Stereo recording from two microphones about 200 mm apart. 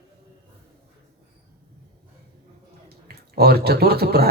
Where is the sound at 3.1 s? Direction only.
50° right (ahead or behind).